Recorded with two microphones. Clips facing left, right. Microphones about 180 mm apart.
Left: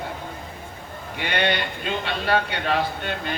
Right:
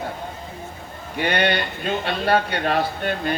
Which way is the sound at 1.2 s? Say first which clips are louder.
Right 3 dB; 40° right (ahead or behind).